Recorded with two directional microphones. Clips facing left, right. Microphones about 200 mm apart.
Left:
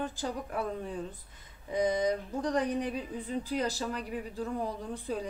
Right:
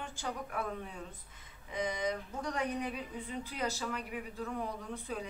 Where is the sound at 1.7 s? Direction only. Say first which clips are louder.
Left 7 dB; 35° left (ahead or behind).